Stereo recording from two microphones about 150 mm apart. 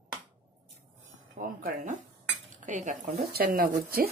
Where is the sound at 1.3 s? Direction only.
70° right (ahead or behind).